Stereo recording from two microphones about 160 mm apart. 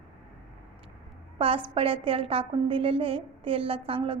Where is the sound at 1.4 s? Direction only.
35° right (ahead or behind).